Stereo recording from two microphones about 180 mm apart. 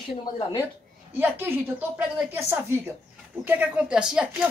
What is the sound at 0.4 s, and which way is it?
Speech, 20° left (ahead or behind).